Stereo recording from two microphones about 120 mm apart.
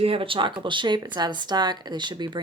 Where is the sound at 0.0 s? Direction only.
50° right (ahead or behind).